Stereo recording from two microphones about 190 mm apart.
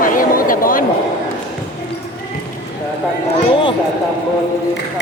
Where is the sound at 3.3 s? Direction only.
25° left (ahead or behind).